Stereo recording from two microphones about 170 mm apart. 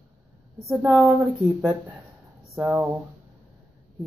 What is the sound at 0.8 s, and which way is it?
Speech, centre (ahead or behind).